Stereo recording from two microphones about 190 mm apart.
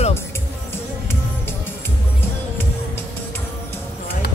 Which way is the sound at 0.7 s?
10° left (ahead or behind).